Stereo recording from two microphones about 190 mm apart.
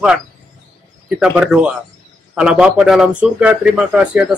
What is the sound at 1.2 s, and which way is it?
Speech, 5° right (ahead or behind).